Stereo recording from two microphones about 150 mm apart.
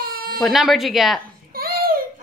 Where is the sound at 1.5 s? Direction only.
85° right.